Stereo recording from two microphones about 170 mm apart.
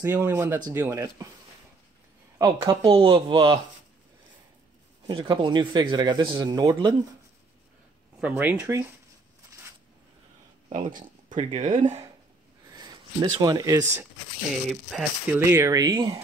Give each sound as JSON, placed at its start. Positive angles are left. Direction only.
{"t": 0.0, "sound": "a man's voice", "side_deg": -15}
{"t": 2.3, "sound": "speech", "side_deg": -25}
{"t": 5.0, "sound": "a man's voice", "side_deg": -25}
{"t": 8.2, "sound": "speech", "side_deg": -10}
{"t": 10.7, "sound": "a sound", "side_deg": -50}
{"t": 11.6, "sound": "speech", "side_deg": -50}
{"t": 12.6, "sound": "speech", "side_deg": -25}
{"t": 14.7, "sound": "speech", "side_deg": 0}
{"t": 15.3, "sound": "a man's voice", "side_deg": -15}